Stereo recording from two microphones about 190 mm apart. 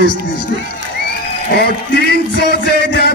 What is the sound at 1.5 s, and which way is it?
Speech, 60° left (ahead or behind).